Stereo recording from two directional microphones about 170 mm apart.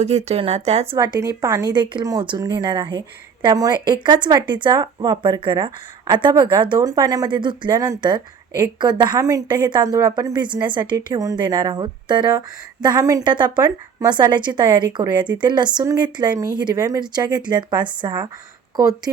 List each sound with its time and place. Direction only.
0.0 s speech: 40° right (ahead or behind)
0.9 s speech: 20° right (ahead or behind)